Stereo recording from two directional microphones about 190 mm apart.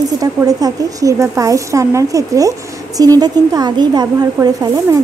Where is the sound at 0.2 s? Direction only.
20° right (ahead or behind).